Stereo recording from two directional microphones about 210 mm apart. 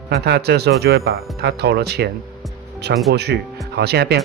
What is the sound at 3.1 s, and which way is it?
Speech, 50° right (ahead or behind).